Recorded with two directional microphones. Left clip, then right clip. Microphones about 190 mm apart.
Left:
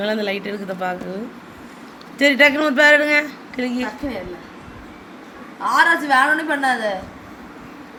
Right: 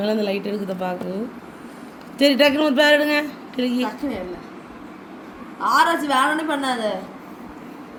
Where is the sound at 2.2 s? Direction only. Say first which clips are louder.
Left 2 dB; 25° right (ahead or behind).